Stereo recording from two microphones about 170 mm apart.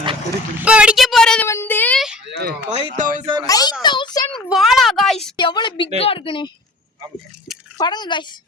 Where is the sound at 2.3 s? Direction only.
70° right (ahead or behind).